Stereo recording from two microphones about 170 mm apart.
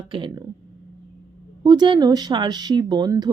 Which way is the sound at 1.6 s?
25° right (ahead or behind).